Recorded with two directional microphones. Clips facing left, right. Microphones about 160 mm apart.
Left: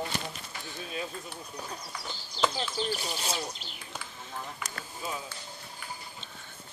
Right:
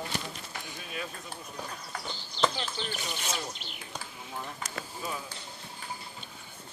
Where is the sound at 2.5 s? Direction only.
35° left (ahead or behind).